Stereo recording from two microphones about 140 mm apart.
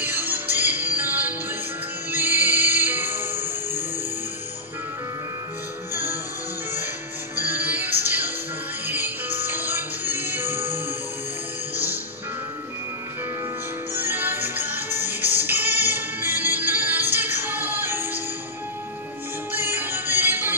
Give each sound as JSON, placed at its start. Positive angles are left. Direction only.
{"t": 0.0, "sound": "music", "side_deg": -15}
{"t": 7.3, "sound": "music", "side_deg": -15}
{"t": 11.7, "sound": "music", "side_deg": 25}
{"t": 13.9, "sound": "music", "side_deg": -15}
{"t": 19.5, "sound": "music", "side_deg": -15}